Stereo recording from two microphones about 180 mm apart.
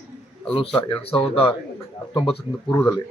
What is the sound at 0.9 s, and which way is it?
Speech, 30° left (ahead or behind).